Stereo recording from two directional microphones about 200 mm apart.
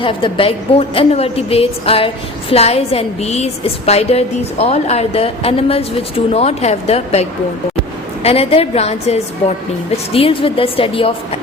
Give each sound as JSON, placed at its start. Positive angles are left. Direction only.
{"t": 0.0, "sound": "a woman's voice", "side_deg": 25}